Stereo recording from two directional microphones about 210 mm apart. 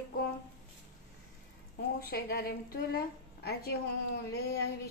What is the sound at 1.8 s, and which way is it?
Speech, 50° left (ahead or behind).